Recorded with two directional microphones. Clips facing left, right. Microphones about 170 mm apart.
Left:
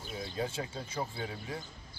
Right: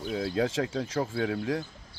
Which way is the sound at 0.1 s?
85° right.